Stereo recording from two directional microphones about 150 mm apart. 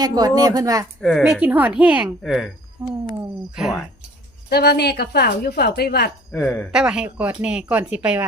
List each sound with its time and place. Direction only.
0.0 s speech: 25° right (ahead or behind)
1.2 s speech: 10° right (ahead or behind)
3.5 s speech: 5° right (ahead or behind)
4.4 s a woman's voice: 90° left
6.3 s speech: 15° left (ahead or behind)
6.7 s speech: 5° right (ahead or behind)